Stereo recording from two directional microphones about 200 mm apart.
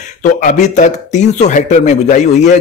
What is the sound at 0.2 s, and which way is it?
Speech, 40° left (ahead or behind).